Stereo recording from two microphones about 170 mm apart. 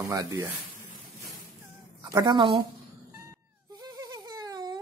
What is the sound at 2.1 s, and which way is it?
Speech, 20° right (ahead or behind).